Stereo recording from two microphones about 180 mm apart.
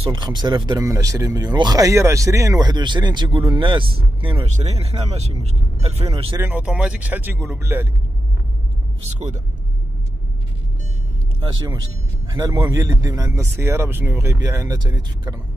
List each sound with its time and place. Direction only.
0.0 s speech: 25° right (ahead or behind)
6.3 s a man's voice: 10° right (ahead or behind)
12.3 s a man's voice: 20° right (ahead or behind)